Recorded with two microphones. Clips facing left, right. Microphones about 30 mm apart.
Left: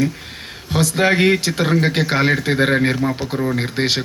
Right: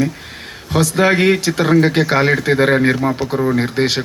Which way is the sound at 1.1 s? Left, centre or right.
Centre.